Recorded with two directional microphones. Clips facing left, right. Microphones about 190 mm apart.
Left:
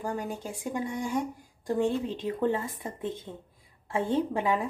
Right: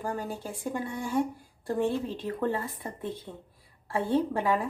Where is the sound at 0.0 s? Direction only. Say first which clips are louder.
Even; 15° left (ahead or behind).